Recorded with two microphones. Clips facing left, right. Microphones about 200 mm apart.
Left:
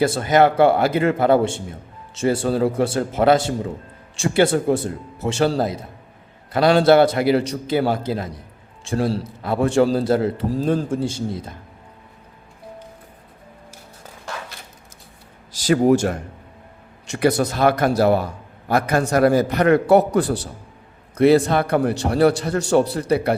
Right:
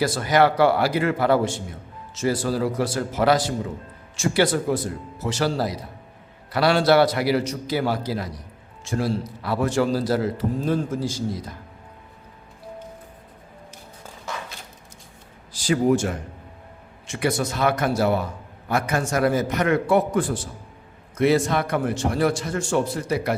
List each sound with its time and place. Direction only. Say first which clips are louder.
0.0 s a man's voice: left 3 dB; 25° left (ahead or behind)
15.8 s a man's voice: left 3 dB; 40° left (ahead or behind)